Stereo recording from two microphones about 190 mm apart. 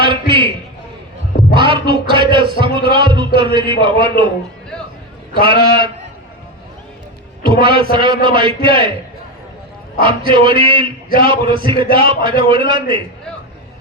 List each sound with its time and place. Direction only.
0.0 s a sound: 25° right (ahead or behind)
1.5 s a man's voice: 25° right (ahead or behind)
5.4 s a man's voice: 25° right (ahead or behind)
7.6 s a man's voice: 25° right (ahead or behind)
10.0 s a man's voice: 25° right (ahead or behind)